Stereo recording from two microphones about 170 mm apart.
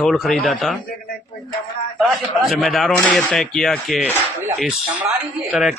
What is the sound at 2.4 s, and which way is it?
Speech, centre (ahead or behind).